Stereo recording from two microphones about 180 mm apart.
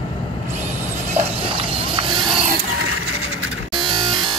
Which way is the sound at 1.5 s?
30° right (ahead or behind).